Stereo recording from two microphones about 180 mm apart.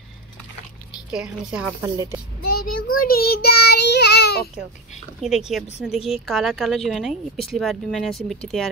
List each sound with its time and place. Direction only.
1.1 s a woman's voice: 5° right (ahead or behind)
2.4 s child singing: 55° left (ahead or behind)
5.2 s a woman's voice: centre (ahead or behind)